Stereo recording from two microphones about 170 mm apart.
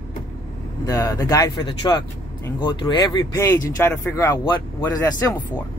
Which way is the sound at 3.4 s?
15° left (ahead or behind).